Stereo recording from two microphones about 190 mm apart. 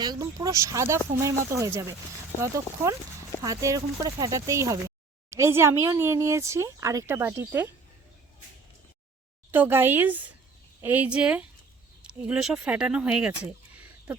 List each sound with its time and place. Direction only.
0.0 s speech: 20° right (ahead or behind)
9.5 s speech: 10° right (ahead or behind)